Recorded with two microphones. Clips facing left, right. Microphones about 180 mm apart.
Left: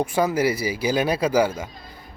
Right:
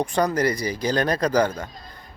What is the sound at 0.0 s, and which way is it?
Speech, 5° left (ahead or behind).